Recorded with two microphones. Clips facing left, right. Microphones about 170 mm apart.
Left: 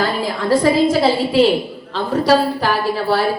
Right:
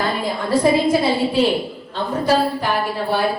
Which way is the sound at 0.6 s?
90° left.